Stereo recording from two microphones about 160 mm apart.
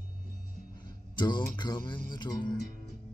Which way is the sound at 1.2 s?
30° left (ahead or behind).